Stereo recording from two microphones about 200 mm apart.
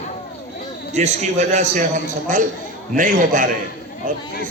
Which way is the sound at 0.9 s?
35° right (ahead or behind).